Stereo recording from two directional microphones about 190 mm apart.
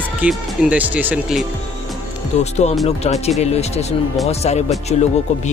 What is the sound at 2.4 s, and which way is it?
Speech, 35° left (ahead or behind).